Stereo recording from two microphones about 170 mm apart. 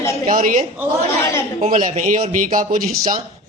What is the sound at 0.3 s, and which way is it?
Speech, 50° right (ahead or behind).